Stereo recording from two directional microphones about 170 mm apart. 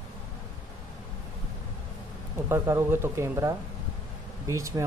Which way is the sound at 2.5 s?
15° right (ahead or behind).